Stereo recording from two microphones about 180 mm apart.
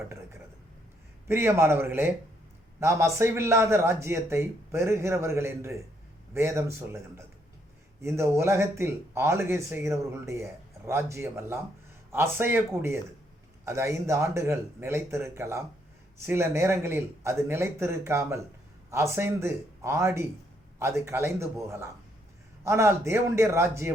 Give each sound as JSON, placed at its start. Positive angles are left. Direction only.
{"t": 1.3, "sound": "a man's voice", "side_deg": -15}